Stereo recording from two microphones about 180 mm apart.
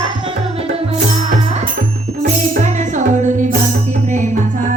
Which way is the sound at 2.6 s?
40° right (ahead or behind).